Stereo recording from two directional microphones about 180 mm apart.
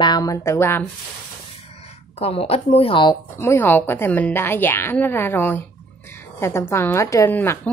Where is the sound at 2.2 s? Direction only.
35° left (ahead or behind).